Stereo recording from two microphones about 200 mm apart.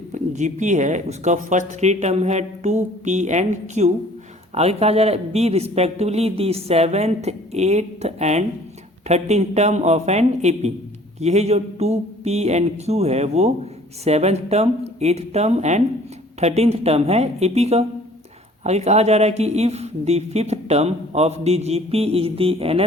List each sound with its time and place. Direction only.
0.1 s a man's voice: 35° right (ahead or behind)